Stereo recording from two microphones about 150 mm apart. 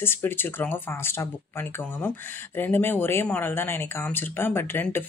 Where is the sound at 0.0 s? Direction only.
15° left (ahead or behind).